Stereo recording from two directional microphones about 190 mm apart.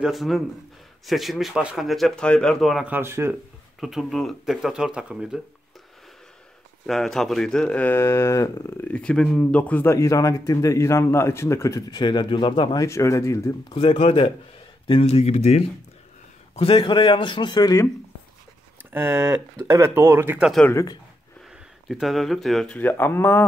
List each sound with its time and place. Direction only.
0.0 s speech: centre (ahead or behind)
3.8 s speech: centre (ahead or behind)
6.9 s speech: centre (ahead or behind)
13.7 s speech: 30° left (ahead or behind)
16.5 s speech: 30° left (ahead or behind)
18.9 s speech: 10° right (ahead or behind)
20.6 s speech: 15° left (ahead or behind)
21.8 s speech: centre (ahead or behind)